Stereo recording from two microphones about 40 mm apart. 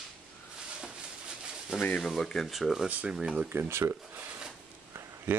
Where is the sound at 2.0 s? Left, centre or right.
Centre.